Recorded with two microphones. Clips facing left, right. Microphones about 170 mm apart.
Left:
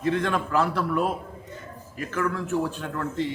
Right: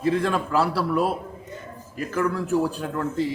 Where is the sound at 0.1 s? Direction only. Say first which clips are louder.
Right 2 dB; 35° right (ahead or behind).